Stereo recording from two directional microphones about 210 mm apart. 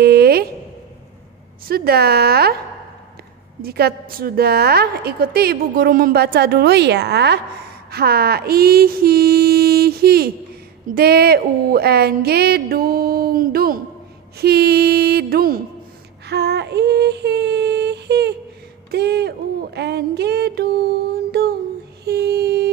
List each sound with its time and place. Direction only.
0.0 s a sound: 50° right (ahead or behind)
1.7 s a woman's voice: 50° right (ahead or behind)
3.6 s a woman's voice: 45° right (ahead or behind)
16.3 s female singing: 50° right (ahead or behind)
18.9 s a sound: 50° right (ahead or behind)
21.1 s music: 50° right (ahead or behind)
22.0 s mantra: 50° right (ahead or behind)